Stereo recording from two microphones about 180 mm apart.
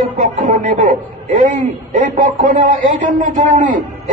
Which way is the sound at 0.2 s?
45° right (ahead or behind).